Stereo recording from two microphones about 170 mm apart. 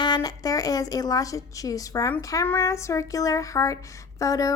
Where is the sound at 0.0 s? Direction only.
25° left (ahead or behind).